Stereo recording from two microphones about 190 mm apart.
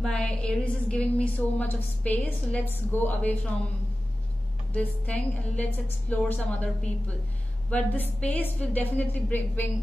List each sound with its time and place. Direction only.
0.0 s a woman's voice: 5° left (ahead or behind)
4.7 s a woman's voice: 5° left (ahead or behind)